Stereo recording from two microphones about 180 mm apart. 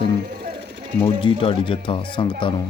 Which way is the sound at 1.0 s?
30° left (ahead or behind).